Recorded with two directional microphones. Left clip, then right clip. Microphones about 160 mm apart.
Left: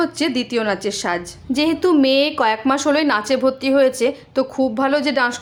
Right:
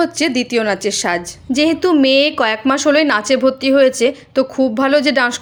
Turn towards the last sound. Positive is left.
turn(degrees=-25)  # may be behind; listen again after turning